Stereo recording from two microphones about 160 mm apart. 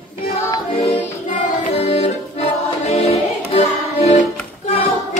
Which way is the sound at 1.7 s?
40° left (ahead or behind).